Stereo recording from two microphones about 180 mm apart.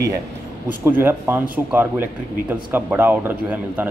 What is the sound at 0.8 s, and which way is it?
A man's voice, 15° right (ahead or behind).